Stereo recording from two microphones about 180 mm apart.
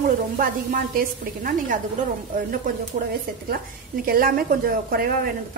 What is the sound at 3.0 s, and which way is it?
A woman's voice, 45° right (ahead or behind).